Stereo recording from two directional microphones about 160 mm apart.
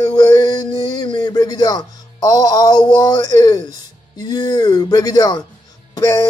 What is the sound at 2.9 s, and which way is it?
Speech, 25° left (ahead or behind).